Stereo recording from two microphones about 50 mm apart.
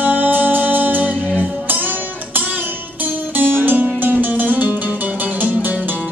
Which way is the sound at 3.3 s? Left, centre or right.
Right.